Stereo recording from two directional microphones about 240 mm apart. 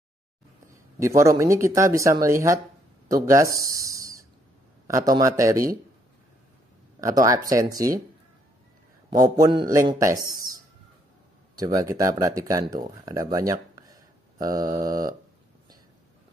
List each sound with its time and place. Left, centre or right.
0.9 s a man's voice: centre
7.0 s a man's voice: centre
9.1 s a man's voice: centre
11.5 s a man's voice: centre